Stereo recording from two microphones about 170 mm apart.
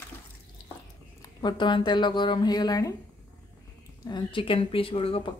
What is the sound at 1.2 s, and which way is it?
Speech, 25° left (ahead or behind).